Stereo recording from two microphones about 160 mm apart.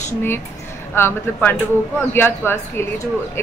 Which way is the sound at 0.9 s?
15° left (ahead or behind).